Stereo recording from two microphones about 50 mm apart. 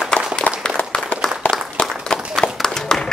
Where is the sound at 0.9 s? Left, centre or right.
Centre.